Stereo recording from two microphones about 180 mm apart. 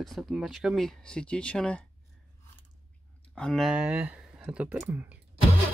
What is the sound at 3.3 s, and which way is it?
Speech, centre (ahead or behind).